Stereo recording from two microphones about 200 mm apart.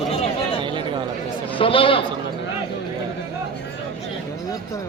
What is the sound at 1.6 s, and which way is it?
Speech, 25° left (ahead or behind).